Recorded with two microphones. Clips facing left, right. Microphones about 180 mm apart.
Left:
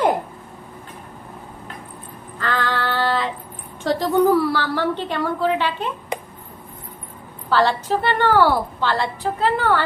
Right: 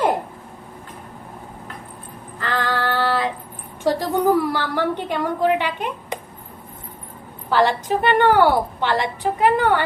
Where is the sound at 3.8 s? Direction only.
15° right (ahead or behind).